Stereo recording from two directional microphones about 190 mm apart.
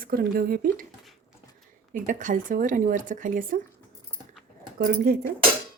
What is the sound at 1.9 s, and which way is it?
Speech, 45° right (ahead or behind).